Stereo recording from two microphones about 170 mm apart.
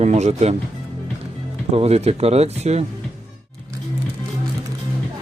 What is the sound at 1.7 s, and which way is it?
Speech, 35° right (ahead or behind).